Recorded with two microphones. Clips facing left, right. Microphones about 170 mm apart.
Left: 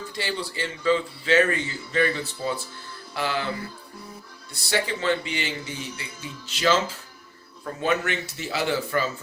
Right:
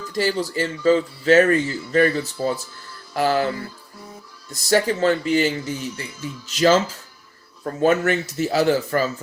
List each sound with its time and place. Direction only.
0.1 s a man's voice: 40° right (ahead or behind)
4.5 s a man's voice: 40° right (ahead or behind)